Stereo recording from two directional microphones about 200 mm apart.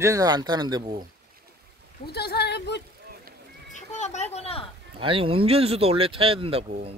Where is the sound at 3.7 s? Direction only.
35° left (ahead or behind).